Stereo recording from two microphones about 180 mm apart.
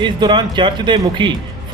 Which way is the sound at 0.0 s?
25° right (ahead or behind).